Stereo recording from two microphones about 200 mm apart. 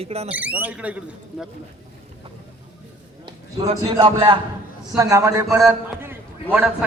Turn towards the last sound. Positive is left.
turn(degrees=-5)  # may be behind; listen again after turning